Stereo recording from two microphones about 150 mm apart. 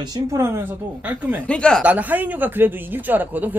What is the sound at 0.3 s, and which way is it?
Speech, 15° right (ahead or behind).